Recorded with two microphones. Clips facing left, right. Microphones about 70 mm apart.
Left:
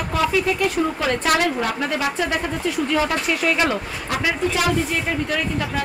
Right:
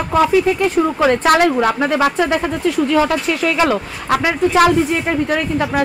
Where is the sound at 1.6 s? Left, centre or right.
Right.